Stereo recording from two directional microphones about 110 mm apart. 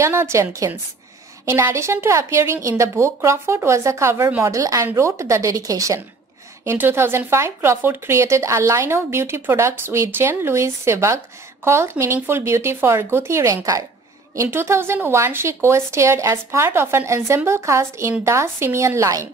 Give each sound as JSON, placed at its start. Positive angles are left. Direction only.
{"t": 0.0, "sound": "a woman's voice", "side_deg": -25}